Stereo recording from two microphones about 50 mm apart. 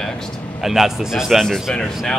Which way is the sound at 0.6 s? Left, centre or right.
Centre.